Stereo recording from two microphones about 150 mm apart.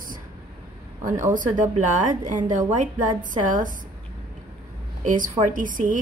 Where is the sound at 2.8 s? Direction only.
60° right (ahead or behind).